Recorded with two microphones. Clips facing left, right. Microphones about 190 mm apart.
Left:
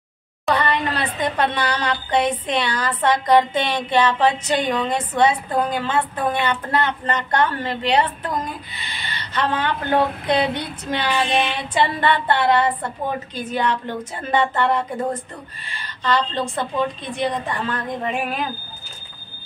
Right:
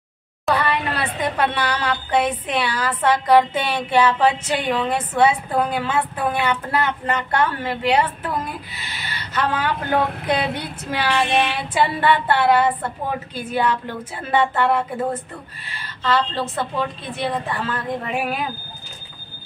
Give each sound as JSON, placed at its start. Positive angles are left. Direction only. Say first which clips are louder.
{"t": 0.5, "sound": "a woman's voice", "louder": "even", "side_deg": -5}